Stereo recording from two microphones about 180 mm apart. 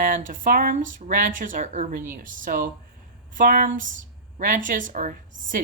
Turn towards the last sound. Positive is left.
turn(degrees=-50)  # may be behind; listen again after turning